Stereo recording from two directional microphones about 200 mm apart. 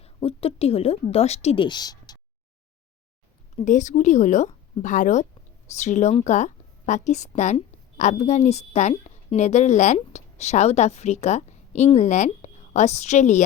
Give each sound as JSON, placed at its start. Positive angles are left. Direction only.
{"t": 0.0, "sound": "a woman's voice", "side_deg": 30}
{"t": 3.5, "sound": "a woman's voice", "side_deg": 40}